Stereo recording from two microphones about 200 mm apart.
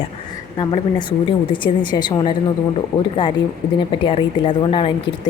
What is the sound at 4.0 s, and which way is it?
Speech, 25° left (ahead or behind).